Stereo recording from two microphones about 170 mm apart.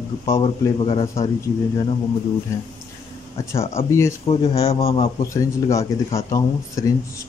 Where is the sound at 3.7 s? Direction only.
15° left (ahead or behind).